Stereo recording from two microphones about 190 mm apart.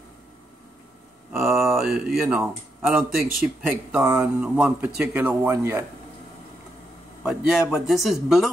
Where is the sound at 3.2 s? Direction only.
50° right (ahead or behind).